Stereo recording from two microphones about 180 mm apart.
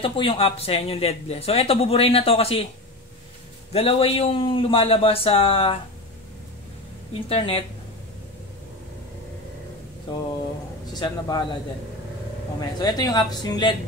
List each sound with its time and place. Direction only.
0.0 s speech: 30° left (ahead or behind)
3.7 s speech: 35° left (ahead or behind)
7.2 s speech: 30° left (ahead or behind)
10.9 s a man's voice: 20° left (ahead or behind)
12.5 s a man's voice: 20° left (ahead or behind)